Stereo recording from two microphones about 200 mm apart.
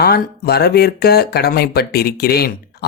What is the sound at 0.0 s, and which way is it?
Speech, 55° left (ahead or behind).